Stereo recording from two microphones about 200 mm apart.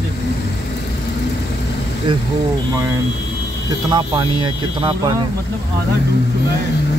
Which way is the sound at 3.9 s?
25° right (ahead or behind).